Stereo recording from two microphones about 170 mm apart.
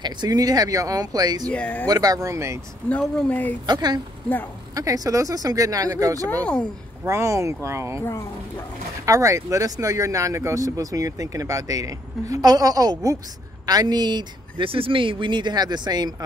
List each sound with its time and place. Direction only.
0.0 s speech: 25° right (ahead or behind)
1.5 s speech: 10° left (ahead or behind)
1.9 s speech: 20° right (ahead or behind)
2.9 s speech: 10° left (ahead or behind)
3.6 s speech: 25° right (ahead or behind)
6.4 s speech: 5° left (ahead or behind)
7.1 s speech: 15° right (ahead or behind)
8.0 s speech: 15° left (ahead or behind)
9.0 s speech: 20° right (ahead or behind)